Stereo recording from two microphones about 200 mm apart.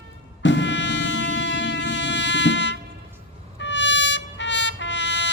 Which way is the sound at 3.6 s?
60° left (ahead or behind).